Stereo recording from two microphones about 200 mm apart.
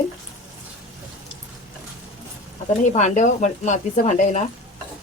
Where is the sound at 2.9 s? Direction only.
35° left (ahead or behind).